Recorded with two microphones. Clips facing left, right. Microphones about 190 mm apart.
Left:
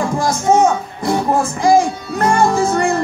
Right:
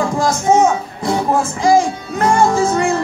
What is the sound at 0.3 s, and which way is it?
Speech, 55° left (ahead or behind).